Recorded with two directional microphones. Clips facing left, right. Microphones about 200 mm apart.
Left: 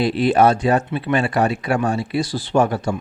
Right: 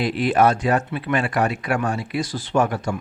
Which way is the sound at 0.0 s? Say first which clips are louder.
Left 3 dB; 30° left (ahead or behind).